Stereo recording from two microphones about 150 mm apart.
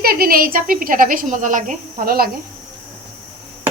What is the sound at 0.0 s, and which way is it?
Speech, 85° right.